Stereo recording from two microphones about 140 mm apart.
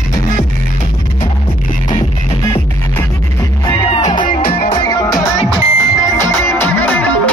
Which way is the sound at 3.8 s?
35° left (ahead or behind).